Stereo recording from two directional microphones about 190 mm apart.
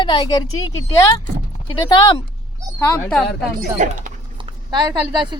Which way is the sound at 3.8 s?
40° right (ahead or behind).